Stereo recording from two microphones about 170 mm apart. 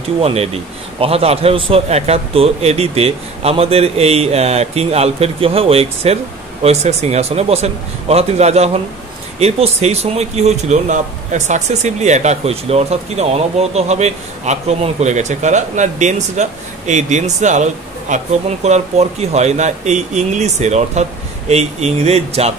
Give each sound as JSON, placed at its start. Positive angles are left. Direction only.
{"t": 0.2, "sound": "a man's voice", "side_deg": -35}